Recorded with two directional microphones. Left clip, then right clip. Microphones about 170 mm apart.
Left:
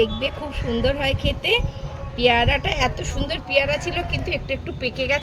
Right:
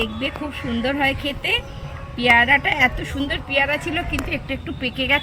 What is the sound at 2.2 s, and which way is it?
Speech, 45° left (ahead or behind).